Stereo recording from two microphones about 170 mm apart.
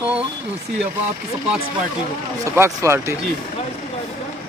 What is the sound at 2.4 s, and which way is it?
Speech, 15° right (ahead or behind).